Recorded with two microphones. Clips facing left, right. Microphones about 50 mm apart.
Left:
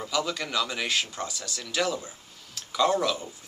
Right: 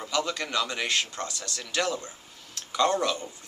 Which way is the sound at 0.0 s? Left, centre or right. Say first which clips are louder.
Even; centre.